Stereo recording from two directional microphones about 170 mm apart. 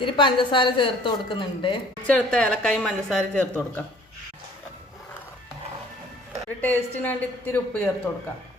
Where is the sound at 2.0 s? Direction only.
5° left (ahead or behind).